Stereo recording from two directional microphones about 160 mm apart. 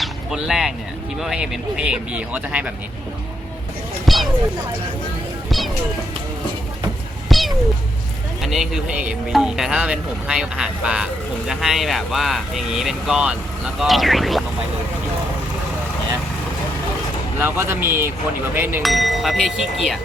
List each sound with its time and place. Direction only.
0.0 s a sound: centre (ahead or behind)
1.2 s speech: 5° right (ahead or behind)
4.0 s a sound: centre (ahead or behind)
5.5 s music: centre (ahead or behind)
7.3 s cat: centre (ahead or behind)
8.4 s speech: centre (ahead or behind)
17.4 s speech: 15° right (ahead or behind)
18.8 s speech: centre (ahead or behind)